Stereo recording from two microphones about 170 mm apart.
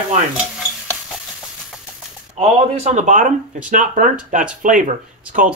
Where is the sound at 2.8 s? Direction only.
45° right (ahead or behind).